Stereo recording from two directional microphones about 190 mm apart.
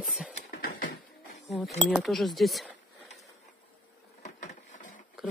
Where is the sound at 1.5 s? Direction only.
Centre (ahead or behind).